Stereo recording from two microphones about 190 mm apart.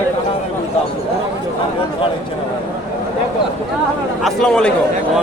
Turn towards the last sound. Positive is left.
turn(degrees=5)  # may be behind; listen again after turning